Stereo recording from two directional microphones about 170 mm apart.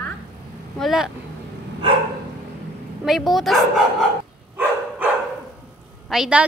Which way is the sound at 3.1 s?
Centre (ahead or behind).